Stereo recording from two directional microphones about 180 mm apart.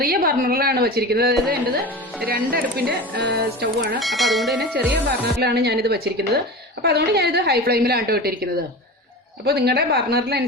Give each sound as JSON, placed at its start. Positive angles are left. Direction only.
{"t": 0.0, "sound": "a woman's voice", "side_deg": -55}
{"t": 1.4, "sound": "speech", "side_deg": 0}
{"t": 2.7, "sound": "speech", "side_deg": -70}
{"t": 4.0, "sound": "speech", "side_deg": 0}
{"t": 5.4, "sound": "a woman's voice", "side_deg": -60}